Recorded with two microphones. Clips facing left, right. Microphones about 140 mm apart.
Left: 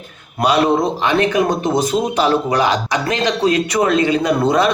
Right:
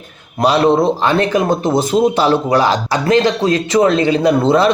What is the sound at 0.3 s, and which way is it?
Speech, 30° right (ahead or behind).